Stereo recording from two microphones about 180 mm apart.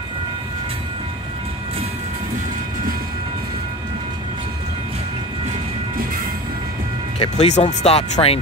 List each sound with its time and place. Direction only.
7.2 s speech: 35° left (ahead or behind)